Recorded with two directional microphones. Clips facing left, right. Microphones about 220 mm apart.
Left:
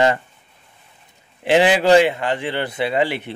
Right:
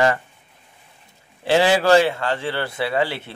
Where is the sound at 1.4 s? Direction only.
20° left (ahead or behind).